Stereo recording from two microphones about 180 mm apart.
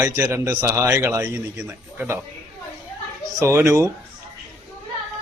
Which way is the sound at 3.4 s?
15° right (ahead or behind).